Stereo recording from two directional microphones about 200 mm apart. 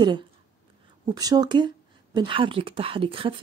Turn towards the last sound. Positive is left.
turn(degrees=-25)  # may be behind; listen again after turning